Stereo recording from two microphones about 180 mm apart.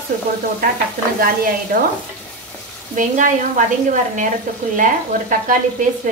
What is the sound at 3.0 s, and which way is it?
Speech, 45° right (ahead or behind).